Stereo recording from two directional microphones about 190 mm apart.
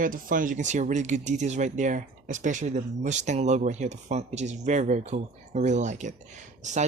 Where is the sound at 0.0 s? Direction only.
45° right (ahead or behind).